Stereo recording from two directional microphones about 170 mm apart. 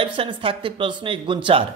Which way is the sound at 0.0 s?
30° right (ahead or behind).